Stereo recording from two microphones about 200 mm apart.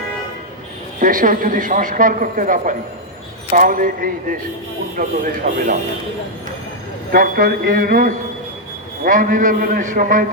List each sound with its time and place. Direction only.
0.9 s a man's voice: 40° right (ahead or behind)
7.1 s a man's voice: 45° right (ahead or behind)